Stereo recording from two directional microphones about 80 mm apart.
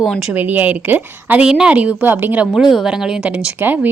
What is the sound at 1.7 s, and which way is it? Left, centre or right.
Speech, right.